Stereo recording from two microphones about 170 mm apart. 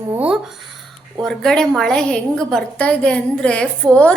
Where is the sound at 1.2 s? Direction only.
Centre (ahead or behind).